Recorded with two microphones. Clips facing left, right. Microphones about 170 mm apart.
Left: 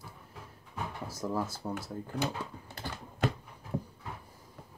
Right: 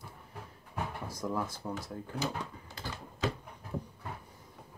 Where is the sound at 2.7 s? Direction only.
60° left (ahead or behind).